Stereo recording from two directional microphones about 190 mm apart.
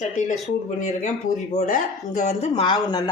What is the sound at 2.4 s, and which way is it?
Speech, 30° left (ahead or behind).